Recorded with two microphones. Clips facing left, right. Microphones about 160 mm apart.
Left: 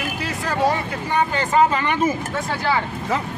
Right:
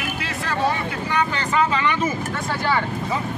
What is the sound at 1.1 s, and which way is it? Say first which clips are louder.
Speech: left 4 dB; 45° left (ahead or behind).